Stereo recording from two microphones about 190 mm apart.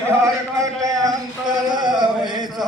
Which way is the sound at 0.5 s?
20° right (ahead or behind).